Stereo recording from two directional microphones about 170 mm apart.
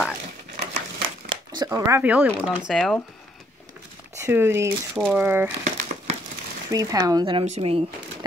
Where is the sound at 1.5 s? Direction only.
20° right (ahead or behind).